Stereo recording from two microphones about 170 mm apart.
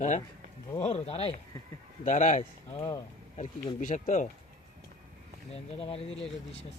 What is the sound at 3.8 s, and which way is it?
Speech, 45° left (ahead or behind).